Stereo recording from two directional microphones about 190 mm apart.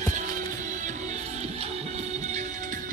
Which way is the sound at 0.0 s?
40° right (ahead or behind).